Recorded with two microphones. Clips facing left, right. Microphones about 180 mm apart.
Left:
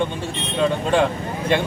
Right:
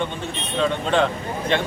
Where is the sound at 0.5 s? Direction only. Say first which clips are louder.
Left 2 dB; 10° left (ahead or behind).